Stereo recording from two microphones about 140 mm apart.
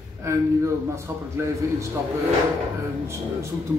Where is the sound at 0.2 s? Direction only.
20° right (ahead or behind).